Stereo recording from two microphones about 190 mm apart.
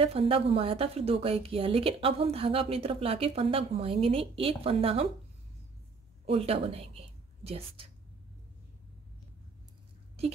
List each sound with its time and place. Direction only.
0.0 s a woman's voice: 30° right (ahead or behind)
6.2 s a woman's voice: 30° right (ahead or behind)